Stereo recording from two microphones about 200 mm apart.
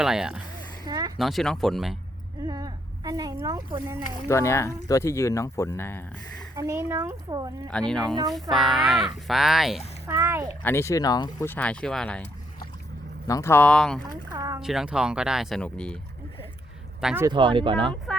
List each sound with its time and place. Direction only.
0.0 s speech: 5° right (ahead or behind)
0.9 s a sound: 20° right (ahead or behind)
1.2 s speech: centre (ahead or behind)
2.5 s speech: 20° right (ahead or behind)
4.1 s speech: 15° left (ahead or behind)
6.6 s speech: 15° right (ahead or behind)
7.7 s speech: 5° left (ahead or behind)
10.1 s speech: 15° right (ahead or behind)
10.6 s speech: 10° left (ahead or behind)
14.3 s speech: 15° right (ahead or behind)
14.6 s speech: centre (ahead or behind)
17.0 s speech: 5° right (ahead or behind)
17.2 s speech: 25° right (ahead or behind)